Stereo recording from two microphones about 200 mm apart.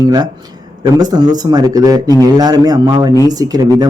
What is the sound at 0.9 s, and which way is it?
A man's voice, 20° right (ahead or behind).